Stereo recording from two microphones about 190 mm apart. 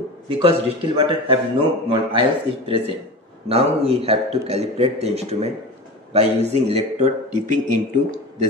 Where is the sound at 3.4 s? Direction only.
30° right (ahead or behind).